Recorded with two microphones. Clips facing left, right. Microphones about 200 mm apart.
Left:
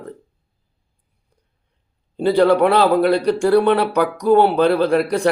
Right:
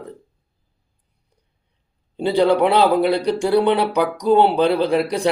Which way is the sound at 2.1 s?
15° right (ahead or behind).